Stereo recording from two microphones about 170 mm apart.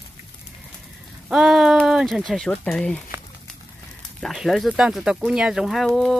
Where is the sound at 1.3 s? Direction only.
Centre (ahead or behind).